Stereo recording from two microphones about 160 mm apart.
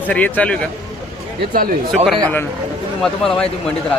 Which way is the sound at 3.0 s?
5° left (ahead or behind).